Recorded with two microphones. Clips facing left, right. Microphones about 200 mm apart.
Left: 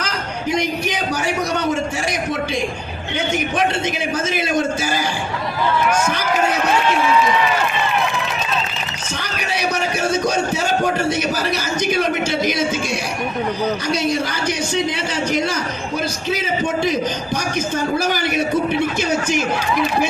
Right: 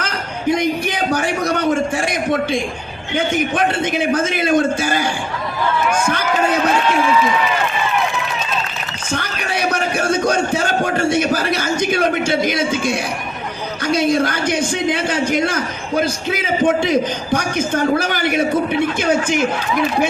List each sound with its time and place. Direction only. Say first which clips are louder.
0.5 s a man's voice: right 2 dB; 55° right (ahead or behind)
9.1 s a man's voice: right 3 dB; 55° right (ahead or behind)